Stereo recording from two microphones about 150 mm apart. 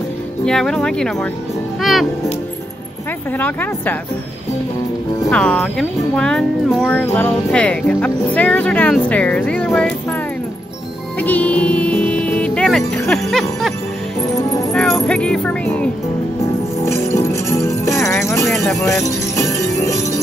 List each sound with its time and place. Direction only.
0.5 s speech: 5° left (ahead or behind)
3.3 s speech: 10° left (ahead or behind)
5.3 s speech: 5° left (ahead or behind)
11.1 s music: 10° left (ahead or behind)
13.1 s speech: centre (ahead or behind)
16.8 s music: 15° left (ahead or behind)
18.1 s speech: 20° left (ahead or behind)
18.5 s speech: centre (ahead or behind)
18.8 s music: 20° left (ahead or behind)